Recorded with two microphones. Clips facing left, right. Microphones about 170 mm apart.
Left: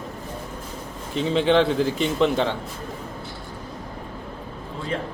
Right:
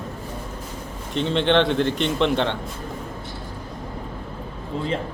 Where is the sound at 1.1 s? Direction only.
5° left (ahead or behind).